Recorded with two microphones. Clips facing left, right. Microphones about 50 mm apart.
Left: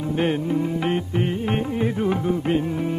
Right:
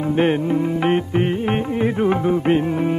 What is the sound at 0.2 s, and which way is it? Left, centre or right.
Music, right.